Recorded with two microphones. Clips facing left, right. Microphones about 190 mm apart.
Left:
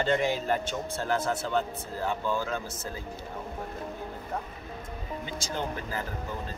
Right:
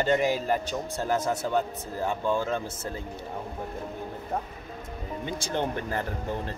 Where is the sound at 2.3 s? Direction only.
30° right (ahead or behind).